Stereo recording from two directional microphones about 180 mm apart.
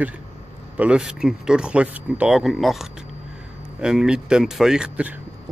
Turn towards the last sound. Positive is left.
turn(degrees=-5)  # may be behind; listen again after turning